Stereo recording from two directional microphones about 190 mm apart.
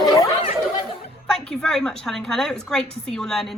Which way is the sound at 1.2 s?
5° left (ahead or behind).